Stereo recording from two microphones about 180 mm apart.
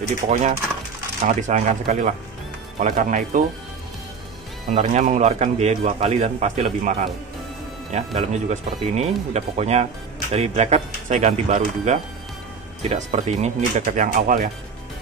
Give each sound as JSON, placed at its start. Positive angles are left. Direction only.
{"t": 0.3, "sound": "a man's voice", "side_deg": -40}
{"t": 4.6, "sound": "a man's voice", "side_deg": -40}